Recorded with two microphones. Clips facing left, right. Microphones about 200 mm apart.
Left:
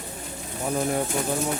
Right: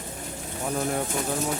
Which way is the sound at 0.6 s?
5° left (ahead or behind).